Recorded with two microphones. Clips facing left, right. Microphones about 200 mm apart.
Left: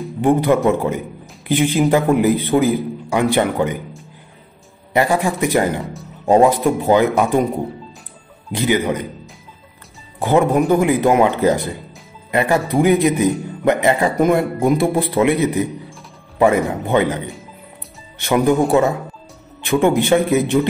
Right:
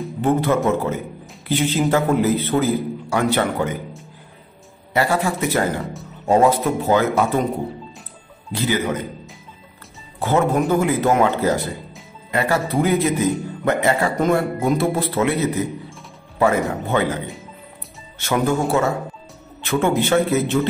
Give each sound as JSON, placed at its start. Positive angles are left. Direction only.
{"t": 0.2, "sound": "a man's voice", "side_deg": 15}
{"t": 4.9, "sound": "a man's voice", "side_deg": 15}
{"t": 8.5, "sound": "a man's voice", "side_deg": 15}
{"t": 10.1, "sound": "a man's voice", "side_deg": 15}
{"t": 18.2, "sound": "a man's voice", "side_deg": 15}